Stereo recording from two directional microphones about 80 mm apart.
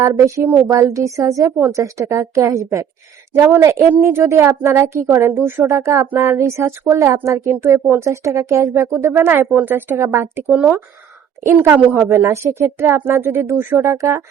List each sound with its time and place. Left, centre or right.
0.0 s a woman's voice: right
11.4 s a woman's voice: right